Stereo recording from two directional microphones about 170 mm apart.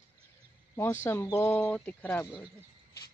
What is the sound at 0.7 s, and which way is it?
Speech, 15° left (ahead or behind).